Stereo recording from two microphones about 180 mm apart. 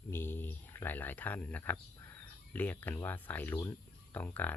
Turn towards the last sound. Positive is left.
turn(degrees=10)  # may be behind; listen again after turning